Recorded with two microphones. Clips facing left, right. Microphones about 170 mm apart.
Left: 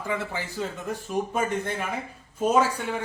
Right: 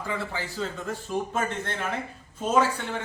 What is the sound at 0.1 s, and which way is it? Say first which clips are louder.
A man's voice: left 2 dB; 15° left (ahead or behind).